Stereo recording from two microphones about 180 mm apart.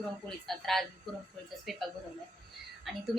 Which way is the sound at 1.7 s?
Centre (ahead or behind).